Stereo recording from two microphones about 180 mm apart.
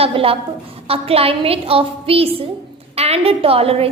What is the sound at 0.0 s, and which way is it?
A woman's voice, 30° right (ahead or behind).